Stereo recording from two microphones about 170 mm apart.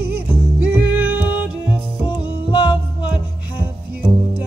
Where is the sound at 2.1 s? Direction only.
25° left (ahead or behind).